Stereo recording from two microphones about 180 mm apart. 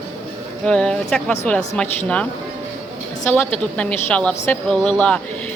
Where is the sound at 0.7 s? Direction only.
5° left (ahead or behind).